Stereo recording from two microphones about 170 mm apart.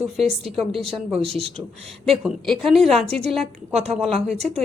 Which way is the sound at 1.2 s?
35° right (ahead or behind).